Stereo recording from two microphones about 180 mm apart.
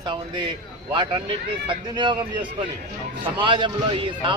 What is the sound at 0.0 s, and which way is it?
Speech, 25° right (ahead or behind).